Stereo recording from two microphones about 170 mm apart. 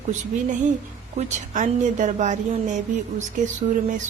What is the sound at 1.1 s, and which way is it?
Speech, 45° right (ahead or behind).